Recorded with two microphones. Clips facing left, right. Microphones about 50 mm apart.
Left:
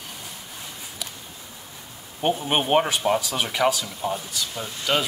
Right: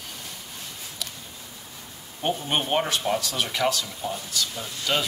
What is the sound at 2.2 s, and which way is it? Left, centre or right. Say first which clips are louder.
Speech: left 3 dB; centre.